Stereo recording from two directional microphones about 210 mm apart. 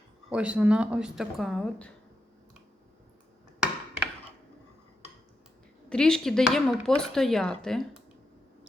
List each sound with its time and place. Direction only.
0.3 s speech: 5° right (ahead or behind)
5.9 s speech: 5° left (ahead or behind)